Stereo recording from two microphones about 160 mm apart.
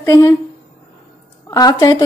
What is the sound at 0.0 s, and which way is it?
Speech, 20° left (ahead or behind).